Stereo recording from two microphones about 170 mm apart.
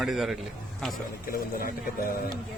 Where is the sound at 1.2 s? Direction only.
60° left (ahead or behind).